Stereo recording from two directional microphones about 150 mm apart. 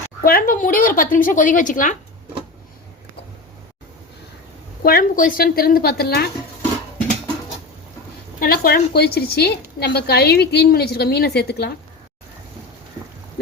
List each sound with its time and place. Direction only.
0.2 s a woman's voice: 75° left (ahead or behind)
4.8 s a woman's voice: 90° left
8.4 s a woman's voice: 85° left